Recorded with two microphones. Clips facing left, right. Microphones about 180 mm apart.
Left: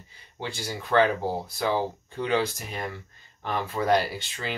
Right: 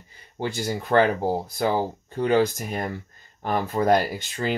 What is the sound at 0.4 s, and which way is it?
Speech, 45° right (ahead or behind).